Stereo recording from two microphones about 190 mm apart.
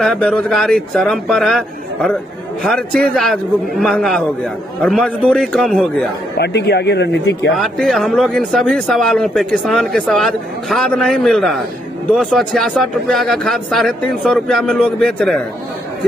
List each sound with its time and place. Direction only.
0.0 s speech: 5° left (ahead or behind)
6.3 s speech: 60° left (ahead or behind)
7.5 s speech: centre (ahead or behind)